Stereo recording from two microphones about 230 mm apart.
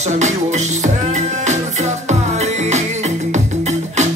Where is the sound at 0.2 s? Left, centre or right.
Right.